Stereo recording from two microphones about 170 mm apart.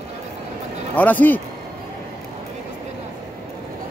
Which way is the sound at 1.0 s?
10° left (ahead or behind).